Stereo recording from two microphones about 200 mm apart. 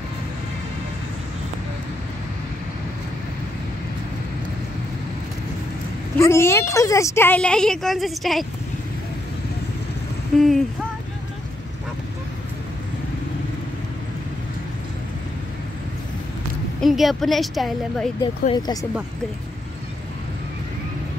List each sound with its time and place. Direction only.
6.1 s speech: 15° left (ahead or behind)
10.3 s a woman's voice: centre (ahead or behind)
16.8 s a woman's voice: centre (ahead or behind)
18.5 s speech: 20° left (ahead or behind)